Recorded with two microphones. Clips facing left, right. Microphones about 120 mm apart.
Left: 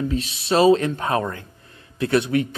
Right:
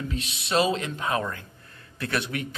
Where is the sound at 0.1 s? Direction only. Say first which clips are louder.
Left 5 dB; 35° left (ahead or behind).